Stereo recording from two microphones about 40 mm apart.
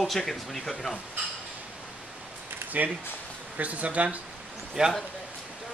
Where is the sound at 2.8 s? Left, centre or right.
Right.